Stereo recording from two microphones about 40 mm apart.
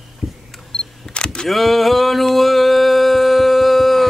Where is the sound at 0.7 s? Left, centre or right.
Left.